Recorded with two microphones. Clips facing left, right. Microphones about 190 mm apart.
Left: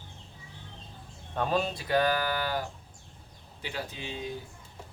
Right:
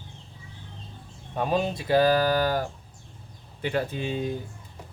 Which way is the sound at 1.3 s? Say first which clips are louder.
Right 3 dB; 15° right (ahead or behind).